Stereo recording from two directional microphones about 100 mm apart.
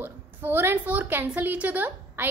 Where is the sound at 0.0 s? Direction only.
20° right (ahead or behind).